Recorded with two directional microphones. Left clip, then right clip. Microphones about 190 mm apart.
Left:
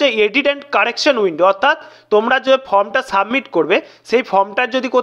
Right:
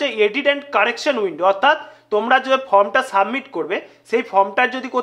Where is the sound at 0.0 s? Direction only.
25° left (ahead or behind).